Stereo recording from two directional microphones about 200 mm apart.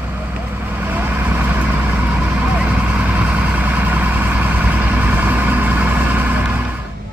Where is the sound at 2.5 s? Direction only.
5° right (ahead or behind).